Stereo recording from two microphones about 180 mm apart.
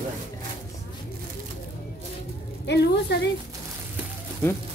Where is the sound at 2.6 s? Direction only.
70° left (ahead or behind).